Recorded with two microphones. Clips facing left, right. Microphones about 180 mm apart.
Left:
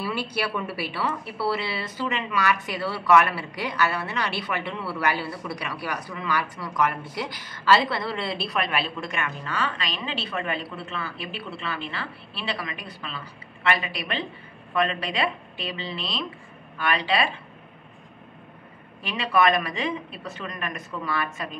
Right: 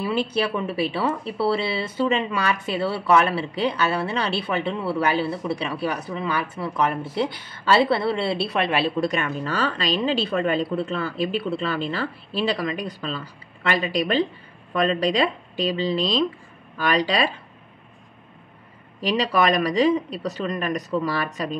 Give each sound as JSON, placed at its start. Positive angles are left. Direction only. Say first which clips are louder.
{"t": 0.0, "sound": "speech", "louder": "right 5 dB", "side_deg": -25}
{"t": 19.0, "sound": "speech", "louder": "right 2 dB", "side_deg": -35}